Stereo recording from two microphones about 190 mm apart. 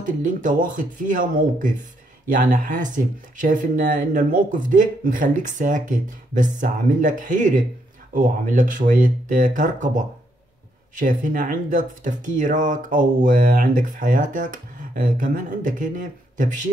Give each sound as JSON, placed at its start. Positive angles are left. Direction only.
{"t": 0.0, "sound": "speech", "side_deg": -45}